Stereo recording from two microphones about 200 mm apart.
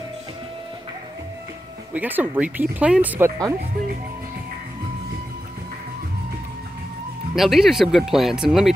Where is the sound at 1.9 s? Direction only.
10° right (ahead or behind).